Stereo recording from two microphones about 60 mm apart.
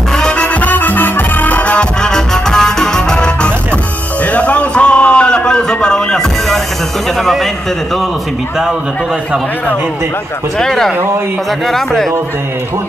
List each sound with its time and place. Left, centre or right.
0.6 s music: left
1.8 s music: centre
4.3 s a sound: left
10.6 s speech: centre